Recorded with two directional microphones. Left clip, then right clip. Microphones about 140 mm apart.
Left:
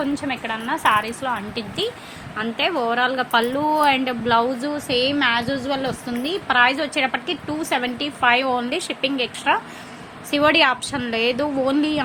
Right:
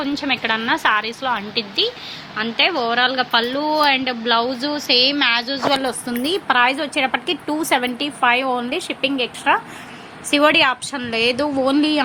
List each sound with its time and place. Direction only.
0.0 s a woman's voice: 25° right (ahead or behind)
1.5 s a woman's voice: 10° right (ahead or behind); by 6.6 s 30° right (ahead or behind)
6.6 s a woman's voice: 15° right (ahead or behind)
7.4 s a woman's voice: 30° right (ahead or behind)